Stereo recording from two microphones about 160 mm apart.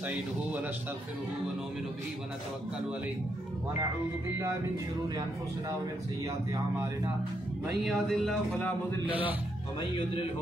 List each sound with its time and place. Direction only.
0.0 s speech: 10° right (ahead or behind)
7.6 s speech: centre (ahead or behind)
8.5 s a man's voice: 10° left (ahead or behind)
9.0 s speech: 10° right (ahead or behind)
9.8 s speech: 30° left (ahead or behind)